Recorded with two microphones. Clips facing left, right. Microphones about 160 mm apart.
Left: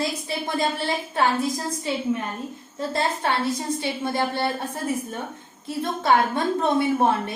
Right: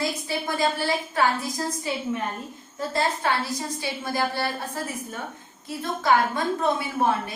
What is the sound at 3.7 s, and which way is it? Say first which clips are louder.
Speech: left 2 dB; 25° left (ahead or behind).